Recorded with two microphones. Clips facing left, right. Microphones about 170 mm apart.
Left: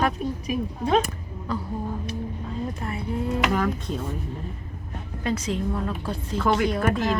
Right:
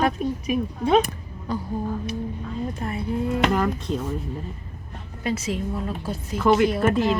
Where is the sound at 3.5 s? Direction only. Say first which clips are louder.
Right 2 dB; centre (ahead or behind).